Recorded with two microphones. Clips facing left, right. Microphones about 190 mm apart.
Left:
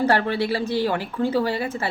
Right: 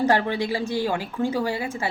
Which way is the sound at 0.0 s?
15° right (ahead or behind).